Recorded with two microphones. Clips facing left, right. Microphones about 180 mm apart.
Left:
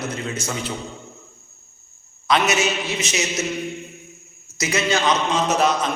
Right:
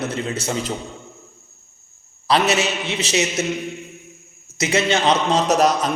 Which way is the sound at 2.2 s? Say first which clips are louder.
Right 1 dB; 30° right (ahead or behind).